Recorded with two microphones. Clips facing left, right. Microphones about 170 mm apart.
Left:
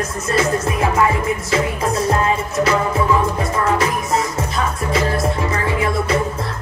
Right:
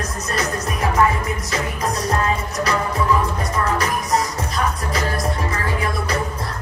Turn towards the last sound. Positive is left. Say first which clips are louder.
# left 5 dB
turn(degrees=25)  # may be behind; listen again after turning